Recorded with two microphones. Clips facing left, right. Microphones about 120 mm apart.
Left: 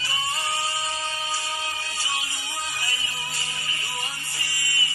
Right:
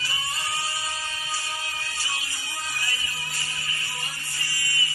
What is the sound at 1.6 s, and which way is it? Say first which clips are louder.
Music: left 3 dB; 20° left (ahead or behind).